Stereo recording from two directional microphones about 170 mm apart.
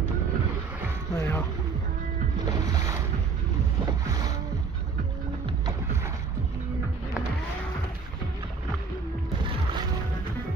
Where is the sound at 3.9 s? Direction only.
25° right (ahead or behind).